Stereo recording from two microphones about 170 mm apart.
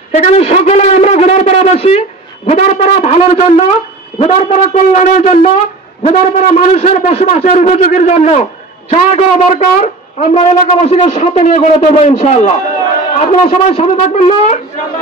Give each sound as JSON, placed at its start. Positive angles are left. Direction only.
{"t": 0.1, "sound": "a man's voice", "side_deg": 40}